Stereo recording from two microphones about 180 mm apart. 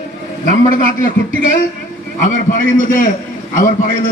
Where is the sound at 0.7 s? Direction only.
45° left (ahead or behind).